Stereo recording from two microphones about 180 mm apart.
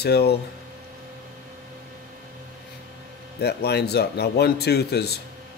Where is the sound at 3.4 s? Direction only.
65° left (ahead or behind).